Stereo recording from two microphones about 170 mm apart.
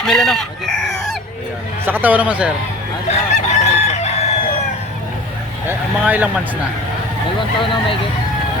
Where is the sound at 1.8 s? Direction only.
10° right (ahead or behind).